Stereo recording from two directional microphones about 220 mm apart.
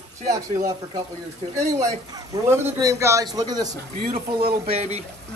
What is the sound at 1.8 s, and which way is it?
A man's voice, 15° right (ahead or behind).